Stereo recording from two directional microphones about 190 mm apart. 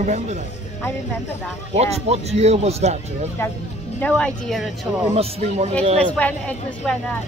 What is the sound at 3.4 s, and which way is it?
Speech, 10° left (ahead or behind).